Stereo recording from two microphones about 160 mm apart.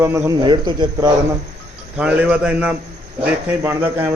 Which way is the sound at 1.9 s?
10° right (ahead or behind).